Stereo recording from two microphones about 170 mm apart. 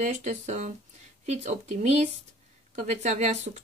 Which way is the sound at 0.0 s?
45° right (ahead or behind).